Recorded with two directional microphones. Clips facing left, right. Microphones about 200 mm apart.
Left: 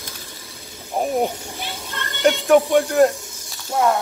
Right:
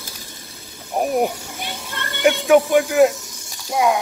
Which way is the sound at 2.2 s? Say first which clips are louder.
Right 1 dB; centre (ahead or behind).